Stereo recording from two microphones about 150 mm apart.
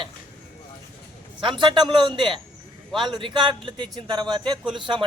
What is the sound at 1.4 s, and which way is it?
A man's voice, 35° right (ahead or behind).